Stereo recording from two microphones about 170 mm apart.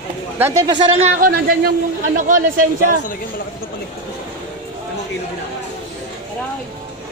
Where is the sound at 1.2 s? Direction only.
65° right (ahead or behind).